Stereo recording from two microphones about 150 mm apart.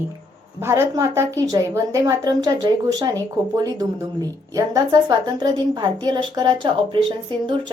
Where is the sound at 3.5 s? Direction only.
25° right (ahead or behind).